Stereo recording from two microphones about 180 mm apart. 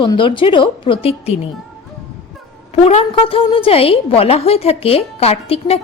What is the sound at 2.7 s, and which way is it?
A woman's voice, 35° left (ahead or behind).